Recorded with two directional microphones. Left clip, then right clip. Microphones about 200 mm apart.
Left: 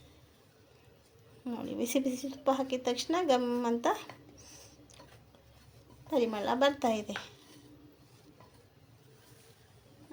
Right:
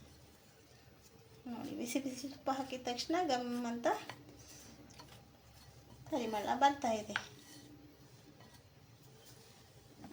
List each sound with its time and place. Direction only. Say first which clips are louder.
1.5 s a woman's voice: left 7 dB; 50° left (ahead or behind)
6.1 s a woman's voice: left 6 dB; 50° left (ahead or behind)